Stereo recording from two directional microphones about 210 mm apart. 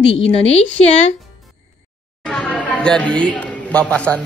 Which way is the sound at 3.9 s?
5° left (ahead or behind).